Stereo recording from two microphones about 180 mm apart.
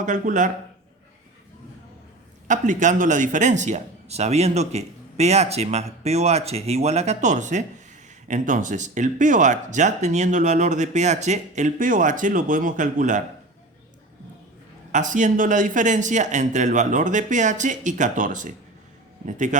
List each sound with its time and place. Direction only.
0.0 s speech: 45° right (ahead or behind)
2.5 s speech: 45° right (ahead or behind)
14.9 s speech: 45° right (ahead or behind)